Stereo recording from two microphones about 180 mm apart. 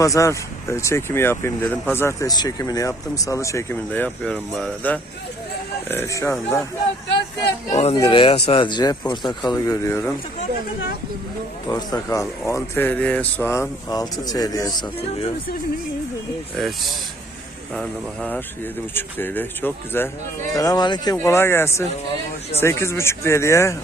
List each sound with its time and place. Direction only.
0.0 s speech: 20° left (ahead or behind)
7.7 s speech: 35° left (ahead or behind); by 10.1 s 15° left (ahead or behind)
11.7 s speech: 20° left (ahead or behind)
16.6 s speech: centre (ahead or behind); by 23.7 s 15° left (ahead or behind)